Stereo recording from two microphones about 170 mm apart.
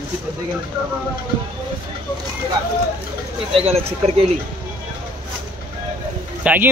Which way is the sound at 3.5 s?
35° right (ahead or behind).